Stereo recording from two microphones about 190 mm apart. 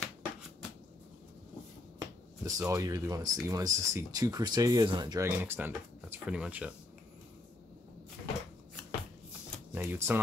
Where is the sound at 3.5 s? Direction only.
15° right (ahead or behind).